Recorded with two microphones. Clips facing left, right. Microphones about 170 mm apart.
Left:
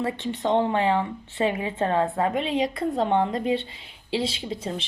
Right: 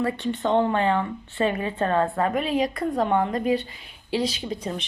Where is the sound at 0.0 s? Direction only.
20° left (ahead or behind).